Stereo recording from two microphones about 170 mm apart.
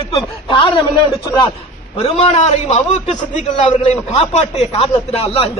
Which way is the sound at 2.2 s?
40° left (ahead or behind).